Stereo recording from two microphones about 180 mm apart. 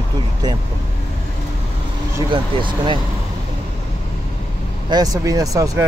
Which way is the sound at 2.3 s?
25° right (ahead or behind).